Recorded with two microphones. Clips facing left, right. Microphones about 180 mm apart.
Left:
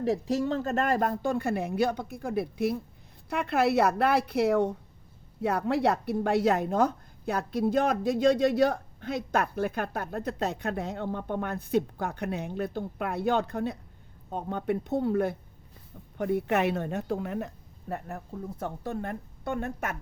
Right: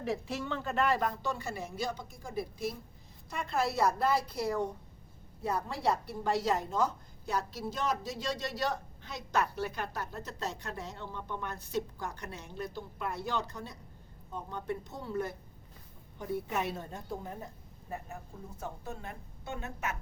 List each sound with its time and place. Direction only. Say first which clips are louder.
0.0 s a woman's voice: left 8 dB; 40° left (ahead or behind); by 18.2 s 70° left (ahead or behind)
18.6 s a woman's voice: left 7 dB; 60° left (ahead or behind)